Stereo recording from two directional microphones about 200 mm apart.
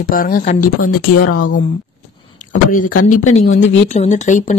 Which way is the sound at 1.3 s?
70° left (ahead or behind).